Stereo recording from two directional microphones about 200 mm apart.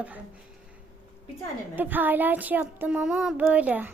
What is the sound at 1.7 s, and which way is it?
Child singing, 10° right (ahead or behind).